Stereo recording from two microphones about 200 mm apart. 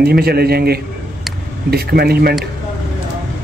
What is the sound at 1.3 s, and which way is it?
Vehicle, centre (ahead or behind).